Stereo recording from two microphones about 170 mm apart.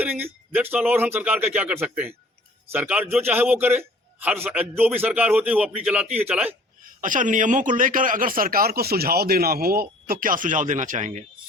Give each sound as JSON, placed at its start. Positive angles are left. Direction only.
{"t": 0.0, "sound": "a man's voice", "side_deg": -10}
{"t": 6.8, "sound": "a man's voice", "side_deg": -50}